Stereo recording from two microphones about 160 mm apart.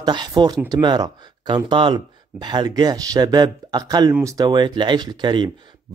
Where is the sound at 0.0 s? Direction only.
25° right (ahead or behind).